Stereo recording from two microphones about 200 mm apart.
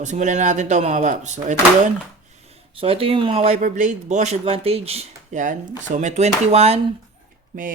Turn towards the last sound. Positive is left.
turn(degrees=-40)  # may be behind; listen again after turning